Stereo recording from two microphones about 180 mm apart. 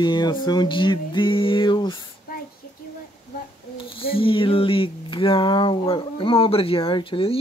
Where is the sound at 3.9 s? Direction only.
30° left (ahead or behind).